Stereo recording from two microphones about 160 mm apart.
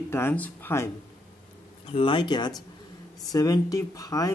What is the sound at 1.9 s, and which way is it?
A woman's voice, 30° left (ahead or behind).